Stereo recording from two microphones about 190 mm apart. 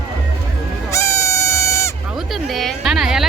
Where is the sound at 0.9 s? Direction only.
15° left (ahead or behind).